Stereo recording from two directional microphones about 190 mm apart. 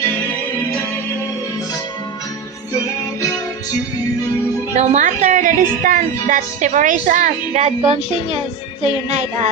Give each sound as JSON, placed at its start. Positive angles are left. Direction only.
{"t": 4.7, "sound": "a woman's voice", "side_deg": -35}
{"t": 9.0, "sound": "a woman's voice", "side_deg": -35}